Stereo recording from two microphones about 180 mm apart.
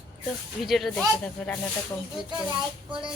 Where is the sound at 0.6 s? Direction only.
Centre (ahead or behind).